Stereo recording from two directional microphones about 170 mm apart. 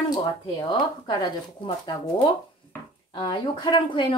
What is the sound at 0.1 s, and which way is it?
Speech, 25° left (ahead or behind).